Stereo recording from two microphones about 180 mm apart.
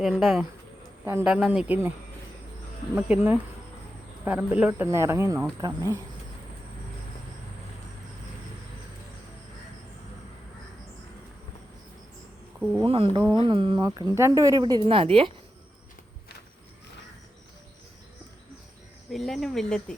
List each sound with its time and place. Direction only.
0.0 s speech: centre (ahead or behind)
2.9 s speech: 10° right (ahead or behind)
12.8 s a woman's voice: 30° right (ahead or behind)
19.1 s speech: centre (ahead or behind)